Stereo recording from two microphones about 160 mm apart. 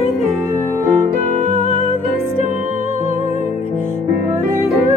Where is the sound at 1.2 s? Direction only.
55° right (ahead or behind).